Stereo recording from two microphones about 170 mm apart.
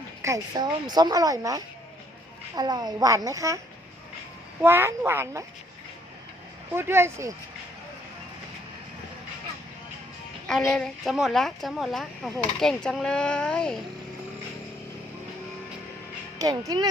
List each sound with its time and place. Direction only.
0.2 s speech: 20° right (ahead or behind)
4.6 s speech: 15° right (ahead or behind)
6.7 s speech: 15° right (ahead or behind)
10.6 s speech: 5° left (ahead or behind)
16.4 s speech: 20° right (ahead or behind)